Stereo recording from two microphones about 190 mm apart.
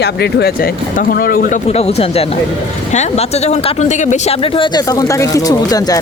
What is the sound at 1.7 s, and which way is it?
Speech, 35° left (ahead or behind).